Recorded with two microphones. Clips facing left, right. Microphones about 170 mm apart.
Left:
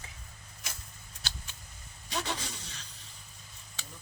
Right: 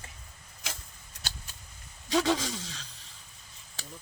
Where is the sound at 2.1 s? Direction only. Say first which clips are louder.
Right 10 dB; 90° right.